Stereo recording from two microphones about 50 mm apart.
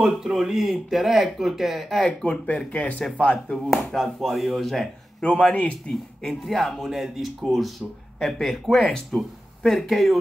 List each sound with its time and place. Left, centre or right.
0.2 s speech: centre
2.2 s speech: left
3.7 s speech: centre
5.2 s speech: left
6.2 s speech: centre